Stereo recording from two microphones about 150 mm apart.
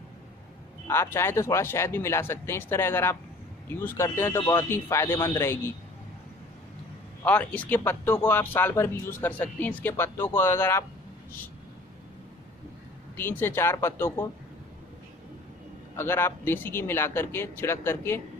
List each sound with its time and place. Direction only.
0.8 s speech: 15° left (ahead or behind)
7.2 s speech: 10° left (ahead or behind)
13.1 s speech: 15° left (ahead or behind)
16.0 s speech: 15° left (ahead or behind)